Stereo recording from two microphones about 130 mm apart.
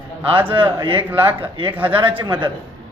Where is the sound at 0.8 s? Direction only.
40° right (ahead or behind).